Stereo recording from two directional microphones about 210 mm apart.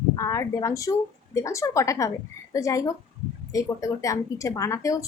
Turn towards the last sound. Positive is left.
turn(degrees=15)  # may be behind; listen again after turning